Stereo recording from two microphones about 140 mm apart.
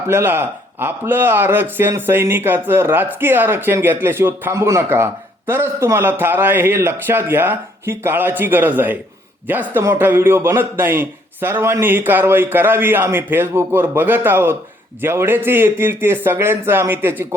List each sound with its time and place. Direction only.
0.1 s speech: 15° right (ahead or behind)